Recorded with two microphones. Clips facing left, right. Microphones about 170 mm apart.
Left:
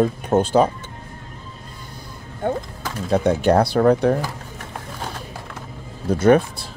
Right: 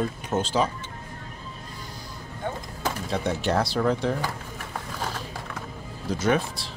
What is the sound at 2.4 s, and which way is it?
Speech, 55° left (ahead or behind).